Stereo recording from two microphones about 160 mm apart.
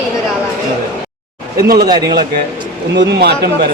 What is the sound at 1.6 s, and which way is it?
Speech, 70° right (ahead or behind).